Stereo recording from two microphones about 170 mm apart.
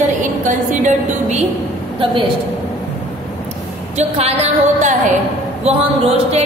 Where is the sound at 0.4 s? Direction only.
45° right (ahead or behind).